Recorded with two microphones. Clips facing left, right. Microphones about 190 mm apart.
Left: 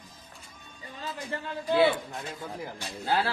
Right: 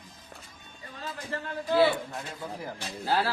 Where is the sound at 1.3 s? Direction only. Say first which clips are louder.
Even; 20° left (ahead or behind).